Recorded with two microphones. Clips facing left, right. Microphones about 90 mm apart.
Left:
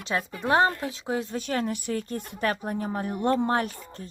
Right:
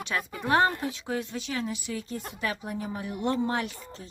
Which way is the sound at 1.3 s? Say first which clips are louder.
Left 4 dB; 50° left (ahead or behind).